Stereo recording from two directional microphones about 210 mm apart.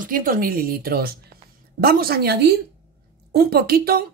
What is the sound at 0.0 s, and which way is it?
Speech, 40° right (ahead or behind).